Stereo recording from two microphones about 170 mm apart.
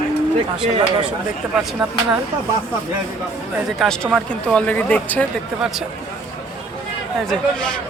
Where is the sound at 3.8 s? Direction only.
5° left (ahead or behind).